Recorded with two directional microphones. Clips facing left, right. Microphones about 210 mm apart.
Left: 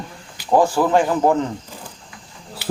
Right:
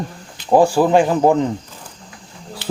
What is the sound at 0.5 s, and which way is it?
Speech, 15° right (ahead or behind).